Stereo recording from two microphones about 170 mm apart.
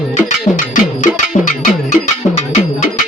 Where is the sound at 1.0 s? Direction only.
45° left (ahead or behind).